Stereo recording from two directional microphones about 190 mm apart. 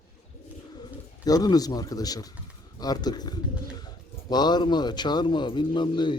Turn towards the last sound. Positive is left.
turn(degrees=25)  # may be behind; listen again after turning